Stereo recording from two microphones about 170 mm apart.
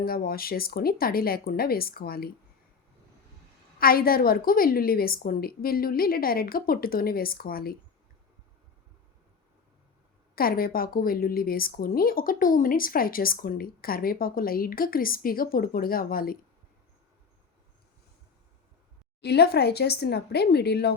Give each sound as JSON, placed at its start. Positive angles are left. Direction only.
{"t": 0.0, "sound": "speech", "side_deg": 60}
{"t": 3.8, "sound": "speech", "side_deg": 60}
{"t": 10.3, "sound": "speech", "side_deg": 60}
{"t": 19.2, "sound": "speech", "side_deg": 75}